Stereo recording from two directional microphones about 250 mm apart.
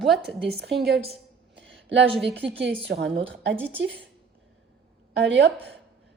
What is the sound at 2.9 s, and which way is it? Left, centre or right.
Speech, right.